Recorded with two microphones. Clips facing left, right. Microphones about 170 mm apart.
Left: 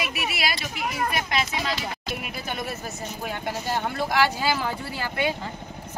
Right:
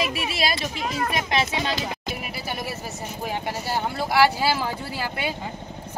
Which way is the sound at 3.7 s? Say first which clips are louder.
Right 2 dB; 10° right (ahead or behind).